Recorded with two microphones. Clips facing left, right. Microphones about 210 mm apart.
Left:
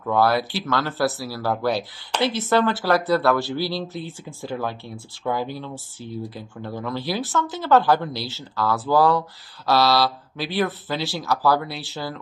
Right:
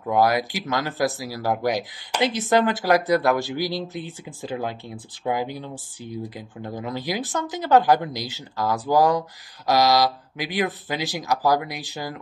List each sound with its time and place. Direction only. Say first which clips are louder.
0.1 s speech: even; 15° right (ahead or behind)